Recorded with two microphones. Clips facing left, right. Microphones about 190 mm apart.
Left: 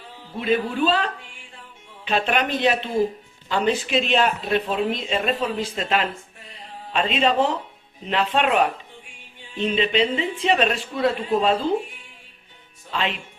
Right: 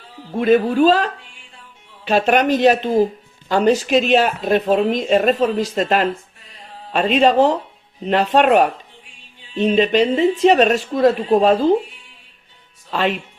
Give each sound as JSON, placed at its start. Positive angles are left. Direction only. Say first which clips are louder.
{"t": 0.3, "sound": "speech", "louder": "right 8 dB", "side_deg": -50}
{"t": 12.9, "sound": "speech", "louder": "right 7 dB", "side_deg": -45}